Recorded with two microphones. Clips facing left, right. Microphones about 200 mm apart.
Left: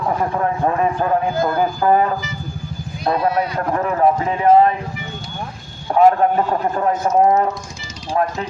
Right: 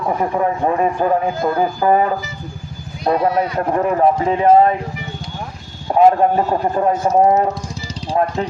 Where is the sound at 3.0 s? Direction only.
15° right (ahead or behind).